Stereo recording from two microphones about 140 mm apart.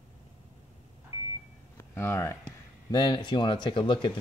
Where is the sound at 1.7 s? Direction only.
20° left (ahead or behind).